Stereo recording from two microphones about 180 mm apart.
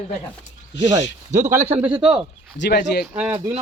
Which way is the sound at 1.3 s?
40° right (ahead or behind).